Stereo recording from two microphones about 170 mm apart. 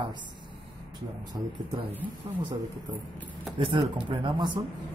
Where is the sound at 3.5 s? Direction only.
30° right (ahead or behind).